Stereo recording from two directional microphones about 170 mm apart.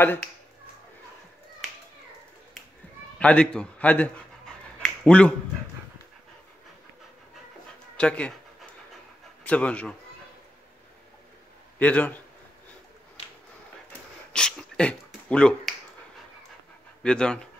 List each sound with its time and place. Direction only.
3.2 s a man's voice: 5° left (ahead or behind)
4.7 s a sound: 5° left (ahead or behind)
8.0 s a man's voice: 5° left (ahead or behind)
9.4 s speech: 10° left (ahead or behind)
11.8 s a man's voice: 10° left (ahead or behind)
13.2 s a sound: 40° left (ahead or behind)
14.3 s finger snapping: 5° left (ahead or behind)
17.0 s speech: 5° left (ahead or behind)